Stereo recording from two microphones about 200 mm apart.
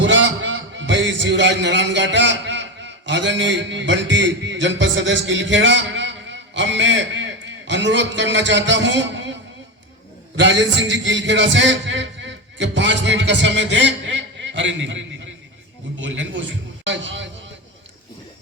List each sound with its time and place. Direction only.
0.0 s a man's voice: 65° right (ahead or behind)
10.4 s a man's voice: 65° right (ahead or behind)